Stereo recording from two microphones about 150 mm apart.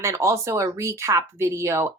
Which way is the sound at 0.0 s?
20° right (ahead or behind).